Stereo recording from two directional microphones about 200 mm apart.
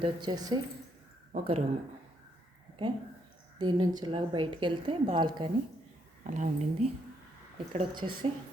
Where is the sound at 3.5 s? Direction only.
20° right (ahead or behind).